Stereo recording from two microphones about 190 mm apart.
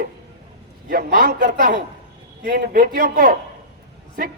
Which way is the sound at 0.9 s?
50° right (ahead or behind).